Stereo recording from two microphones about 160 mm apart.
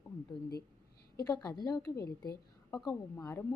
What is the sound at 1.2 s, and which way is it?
Speech, 20° left (ahead or behind).